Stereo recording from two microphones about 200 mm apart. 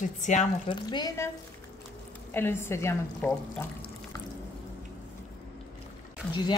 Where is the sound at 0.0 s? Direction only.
35° left (ahead or behind).